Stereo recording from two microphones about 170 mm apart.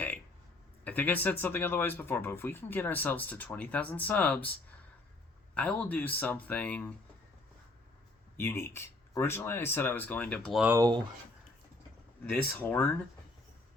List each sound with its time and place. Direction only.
0.9 s speech: 10° left (ahead or behind)
5.5 s speech: 10° left (ahead or behind)
8.4 s speech: 15° left (ahead or behind)
10.6 s speech: 15° right (ahead or behind)
12.2 s speech: 10° left (ahead or behind)